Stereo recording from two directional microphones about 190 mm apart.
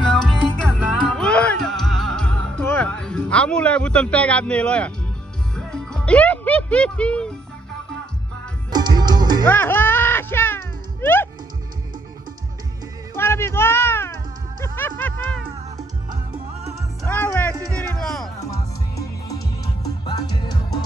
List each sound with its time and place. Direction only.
0.1 s music: 5° left (ahead or behind)
8.7 s music: 20° right (ahead or behind)
9.4 s music: 10° left (ahead or behind)
13.1 s speech: 15° left (ahead or behind)
14.6 s music: 10° left (ahead or behind)
17.0 s music: 10° left (ahead or behind)
18.4 s music: 15° left (ahead or behind)